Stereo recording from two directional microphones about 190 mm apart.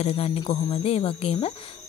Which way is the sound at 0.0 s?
30° left (ahead or behind).